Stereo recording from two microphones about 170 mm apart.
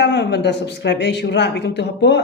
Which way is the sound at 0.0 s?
90° left.